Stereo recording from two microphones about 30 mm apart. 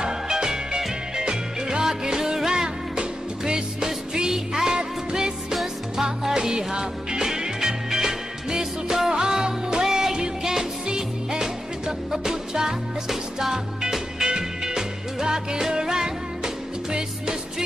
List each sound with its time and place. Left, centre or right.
0.3 s music: right
5.9 s music: centre
9.8 s music: centre
10.1 s music: right